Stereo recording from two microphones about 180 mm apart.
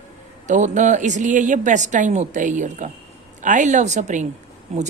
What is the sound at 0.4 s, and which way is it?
A woman's voice, 40° right (ahead or behind).